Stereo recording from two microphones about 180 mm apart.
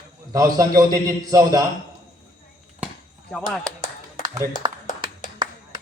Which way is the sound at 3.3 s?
5° left (ahead or behind).